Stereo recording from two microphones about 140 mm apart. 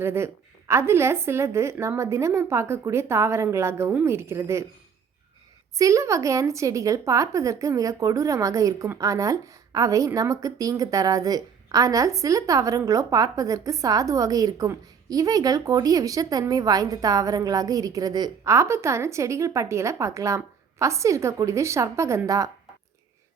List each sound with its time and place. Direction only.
0.0 s a woman's voice: 15° right (ahead or behind)
5.7 s a woman's voice: 20° right (ahead or behind)